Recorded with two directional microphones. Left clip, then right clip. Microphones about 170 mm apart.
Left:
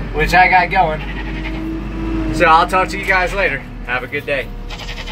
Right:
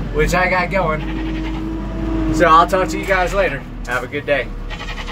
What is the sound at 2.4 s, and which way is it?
Speech, 5° right (ahead or behind).